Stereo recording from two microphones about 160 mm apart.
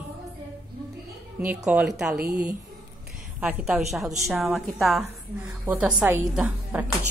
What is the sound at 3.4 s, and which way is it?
A woman's voice, 10° right (ahead or behind).